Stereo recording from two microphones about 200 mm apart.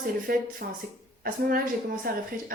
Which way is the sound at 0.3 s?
45° right (ahead or behind).